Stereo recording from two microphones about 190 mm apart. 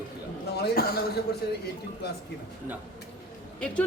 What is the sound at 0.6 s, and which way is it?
Speech, 55° left (ahead or behind).